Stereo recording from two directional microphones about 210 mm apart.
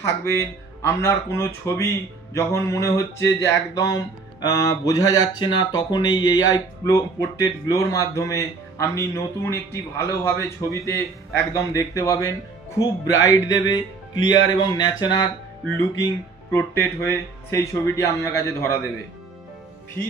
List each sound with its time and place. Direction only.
0.0 s speech: 10° left (ahead or behind)
16.5 s speech: 10° left (ahead or behind)